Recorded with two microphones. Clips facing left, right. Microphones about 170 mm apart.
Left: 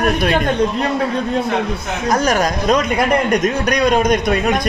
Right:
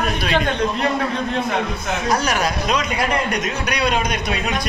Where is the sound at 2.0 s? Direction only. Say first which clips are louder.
Left 5 dB; 45° left (ahead or behind).